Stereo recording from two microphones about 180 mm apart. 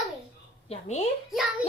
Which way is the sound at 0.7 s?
35° left (ahead or behind).